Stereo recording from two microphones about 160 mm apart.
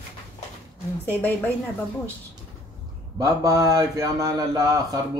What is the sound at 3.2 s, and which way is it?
Speech, 20° right (ahead or behind).